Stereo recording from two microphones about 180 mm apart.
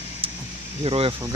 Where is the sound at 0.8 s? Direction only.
35° right (ahead or behind).